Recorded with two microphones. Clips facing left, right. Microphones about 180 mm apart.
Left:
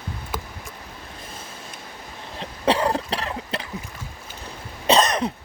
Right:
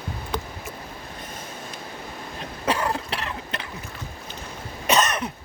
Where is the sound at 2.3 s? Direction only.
30° left (ahead or behind).